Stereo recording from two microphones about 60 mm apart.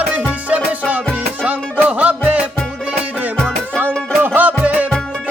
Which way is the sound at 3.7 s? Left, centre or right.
Right.